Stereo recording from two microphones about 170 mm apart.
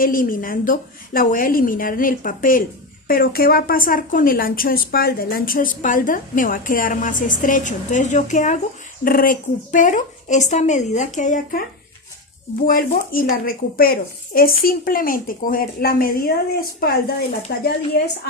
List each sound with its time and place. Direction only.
0.0 s speech: 55° left (ahead or behind)
12.6 s speech: 55° left (ahead or behind)